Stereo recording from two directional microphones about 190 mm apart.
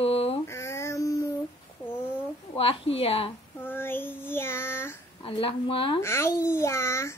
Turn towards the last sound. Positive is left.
turn(degrees=15)  # may be behind; listen again after turning